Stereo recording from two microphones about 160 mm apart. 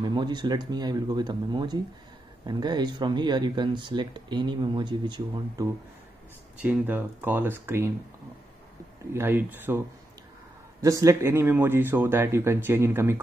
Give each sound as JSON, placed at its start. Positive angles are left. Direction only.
{"t": 0.0, "sound": "speech", "side_deg": -30}
{"t": 6.6, "sound": "speech", "side_deg": -10}
{"t": 9.1, "sound": "speech", "side_deg": -15}